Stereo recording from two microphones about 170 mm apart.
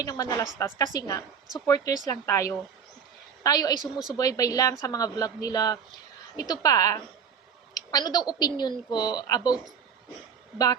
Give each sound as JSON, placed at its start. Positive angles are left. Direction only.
{"t": 0.0, "sound": "a woman's voice", "side_deg": 20}